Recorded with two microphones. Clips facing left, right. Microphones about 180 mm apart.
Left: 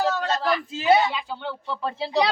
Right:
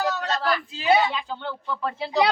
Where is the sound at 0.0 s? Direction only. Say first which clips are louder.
Left 2 dB; 25° left (ahead or behind).